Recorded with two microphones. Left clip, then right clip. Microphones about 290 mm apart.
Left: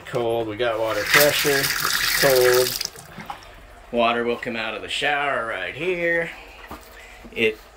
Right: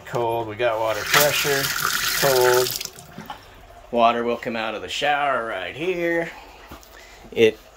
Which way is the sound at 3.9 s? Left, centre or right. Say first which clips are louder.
Right 2 dB; centre.